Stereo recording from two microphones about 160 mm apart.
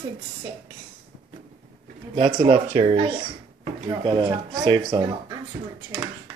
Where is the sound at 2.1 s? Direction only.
30° right (ahead or behind).